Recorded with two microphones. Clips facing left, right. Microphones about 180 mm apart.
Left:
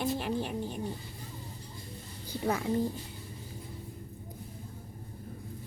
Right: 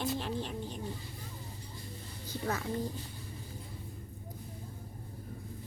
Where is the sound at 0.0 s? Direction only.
10° left (ahead or behind).